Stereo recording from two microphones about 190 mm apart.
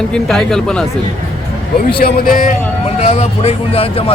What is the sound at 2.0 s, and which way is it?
Speech, 50° left (ahead or behind).